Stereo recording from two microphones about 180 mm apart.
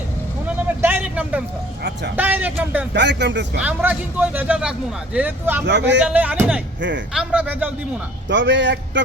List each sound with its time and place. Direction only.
0.8 s vehicle: 10° right (ahead or behind)
2.1 s a man's voice: 10° right (ahead or behind)
2.9 s speech: 75° right (ahead or behind)
3.6 s a man's voice: 10° right (ahead or behind)
5.6 s speech: 75° right (ahead or behind)
6.1 s a man's voice: 10° right (ahead or behind)
8.3 s speech: 90° right